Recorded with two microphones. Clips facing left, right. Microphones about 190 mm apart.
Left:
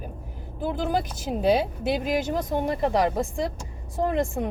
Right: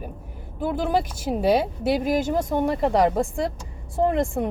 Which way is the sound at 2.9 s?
Centre (ahead or behind).